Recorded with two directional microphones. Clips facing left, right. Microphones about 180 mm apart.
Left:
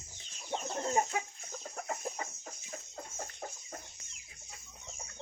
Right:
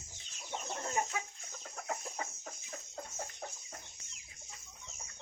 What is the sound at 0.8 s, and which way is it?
Chicken, 30° left (ahead or behind).